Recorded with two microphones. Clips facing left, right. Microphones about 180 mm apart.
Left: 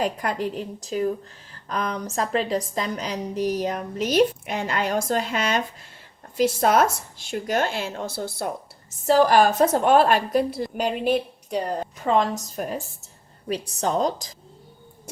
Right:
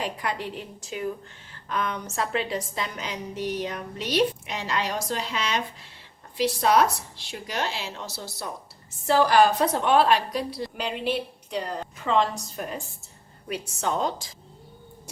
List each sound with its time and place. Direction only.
0.0 s a woman's voice: 45° left (ahead or behind)
13.5 s a woman's voice: 35° left (ahead or behind)